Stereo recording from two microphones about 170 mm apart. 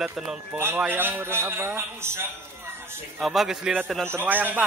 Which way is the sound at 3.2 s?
Centre (ahead or behind).